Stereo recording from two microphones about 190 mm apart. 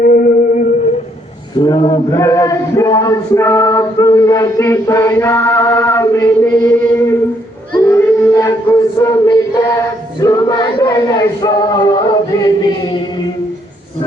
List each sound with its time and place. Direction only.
0.0 s music: 50° left (ahead or behind)
1.5 s a man's voice: 20° left (ahead or behind)
7.7 s child singing: 15° left (ahead or behind)
9.0 s a sound: 15° left (ahead or behind)
10.2 s choir: 20° left (ahead or behind)
12.5 s chant: 20° left (ahead or behind)